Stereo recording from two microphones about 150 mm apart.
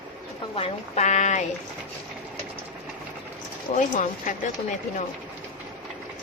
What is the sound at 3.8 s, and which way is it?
Speech, 60° left (ahead or behind).